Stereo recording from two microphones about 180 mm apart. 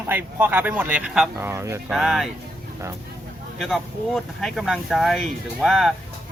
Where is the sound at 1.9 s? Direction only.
Centre (ahead or behind).